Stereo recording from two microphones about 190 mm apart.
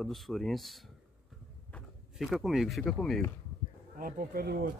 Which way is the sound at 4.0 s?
50° right (ahead or behind).